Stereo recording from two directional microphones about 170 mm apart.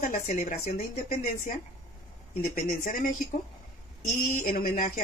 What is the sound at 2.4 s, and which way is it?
Speech, 55° left (ahead or behind).